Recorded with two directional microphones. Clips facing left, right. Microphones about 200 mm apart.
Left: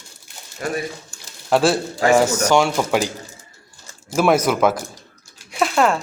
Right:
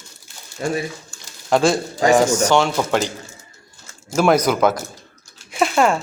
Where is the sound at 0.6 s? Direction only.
25° right (ahead or behind).